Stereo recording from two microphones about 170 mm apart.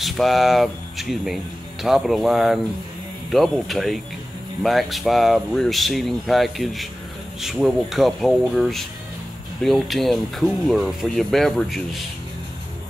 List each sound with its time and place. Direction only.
0.0 s speech: centre (ahead or behind)